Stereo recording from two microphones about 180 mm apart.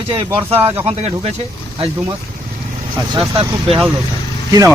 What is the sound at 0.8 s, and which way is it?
Speech, 35° right (ahead or behind).